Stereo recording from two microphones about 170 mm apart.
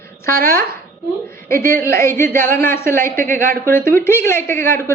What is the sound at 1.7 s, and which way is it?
Speech, 15° left (ahead or behind).